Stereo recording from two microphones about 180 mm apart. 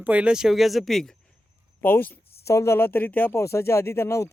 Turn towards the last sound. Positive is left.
turn(degrees=15)  # may be behind; listen again after turning